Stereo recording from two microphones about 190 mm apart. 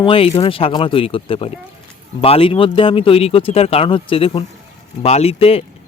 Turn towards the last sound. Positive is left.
turn(degrees=30)  # may be behind; listen again after turning